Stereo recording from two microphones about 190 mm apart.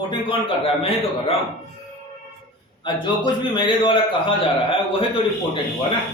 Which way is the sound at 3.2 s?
25° left (ahead or behind).